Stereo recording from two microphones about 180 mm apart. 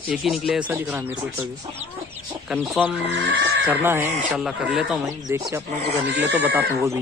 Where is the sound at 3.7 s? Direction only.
15° right (ahead or behind).